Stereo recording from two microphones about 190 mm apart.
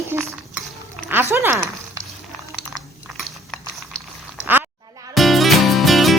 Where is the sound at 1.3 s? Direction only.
10° right (ahead or behind).